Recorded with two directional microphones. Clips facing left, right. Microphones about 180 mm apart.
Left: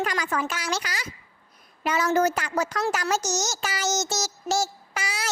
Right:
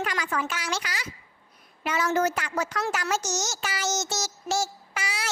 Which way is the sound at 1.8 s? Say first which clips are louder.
Left 3 dB; 40° left (ahead or behind).